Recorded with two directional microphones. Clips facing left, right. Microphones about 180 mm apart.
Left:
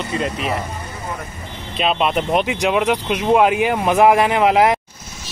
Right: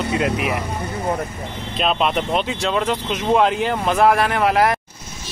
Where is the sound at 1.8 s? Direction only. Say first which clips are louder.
Left 1 dB; centre (ahead or behind).